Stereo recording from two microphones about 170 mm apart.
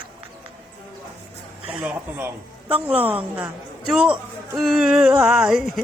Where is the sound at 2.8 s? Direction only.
10° right (ahead or behind).